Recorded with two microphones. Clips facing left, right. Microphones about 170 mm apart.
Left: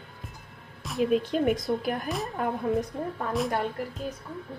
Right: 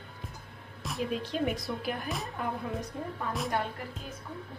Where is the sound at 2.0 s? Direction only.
Centre (ahead or behind).